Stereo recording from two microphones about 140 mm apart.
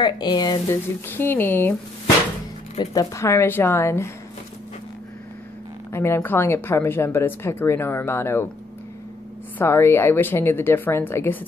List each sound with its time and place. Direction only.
0.0 s speech: 30° left (ahead or behind)
1.0 s speech: 15° left (ahead or behind)
2.8 s speech: 25° left (ahead or behind)
5.9 s speech: 20° left (ahead or behind)
9.6 s speech: 20° left (ahead or behind)